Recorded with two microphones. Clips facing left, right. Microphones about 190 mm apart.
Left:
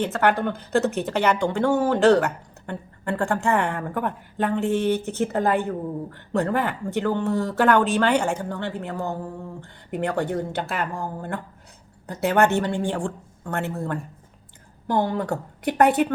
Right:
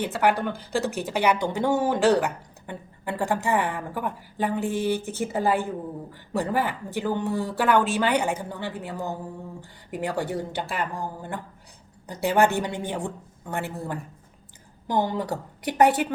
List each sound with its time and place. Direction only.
0.0 s speech: 10° right (ahead or behind)
10.8 s speech: 55° left (ahead or behind)
12.4 s speech: 10° right (ahead or behind)
15.3 s a woman's voice: 55° left (ahead or behind)